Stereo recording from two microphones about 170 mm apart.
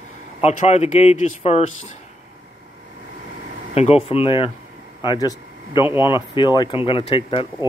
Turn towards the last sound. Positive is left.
turn(degrees=30)  # may be behind; listen again after turning